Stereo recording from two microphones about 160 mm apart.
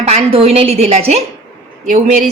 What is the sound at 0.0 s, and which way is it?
A woman's voice, 40° right (ahead or behind).